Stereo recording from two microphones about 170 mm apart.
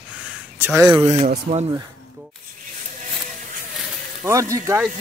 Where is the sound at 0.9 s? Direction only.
20° right (ahead or behind).